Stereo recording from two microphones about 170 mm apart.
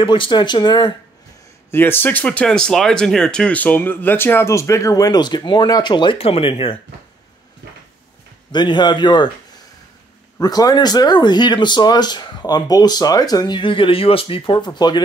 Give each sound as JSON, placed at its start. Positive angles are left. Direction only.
{"t": 0.0, "sound": "speech", "side_deg": 30}
{"t": 1.7, "sound": "speech", "side_deg": 10}
{"t": 8.5, "sound": "speech", "side_deg": 25}
{"t": 10.4, "sound": "speech", "side_deg": 20}